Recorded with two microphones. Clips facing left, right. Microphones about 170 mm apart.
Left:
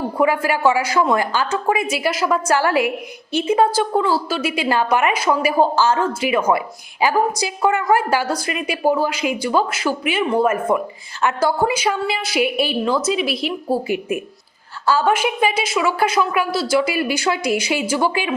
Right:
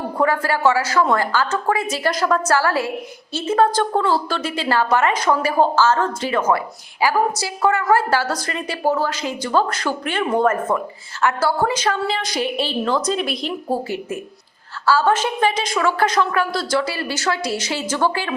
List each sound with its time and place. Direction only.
0.2 s a woman's voice: 10° left (ahead or behind)
13.8 s a woman's voice: 15° left (ahead or behind)